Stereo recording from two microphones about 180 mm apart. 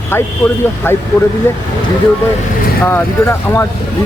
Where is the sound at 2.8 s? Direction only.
10° left (ahead or behind).